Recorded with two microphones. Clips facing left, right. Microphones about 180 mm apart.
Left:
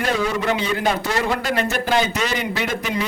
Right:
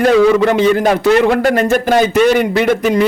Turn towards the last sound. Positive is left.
turn(degrees=-60)  # may be behind; listen again after turning